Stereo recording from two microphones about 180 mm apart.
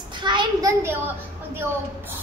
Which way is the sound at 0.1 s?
25° right (ahead or behind).